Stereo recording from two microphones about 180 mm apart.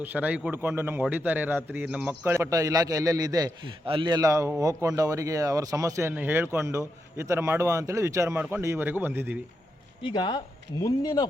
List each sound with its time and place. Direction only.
0.0 s speech: 10° right (ahead or behind)
10.0 s speech: 25° left (ahead or behind)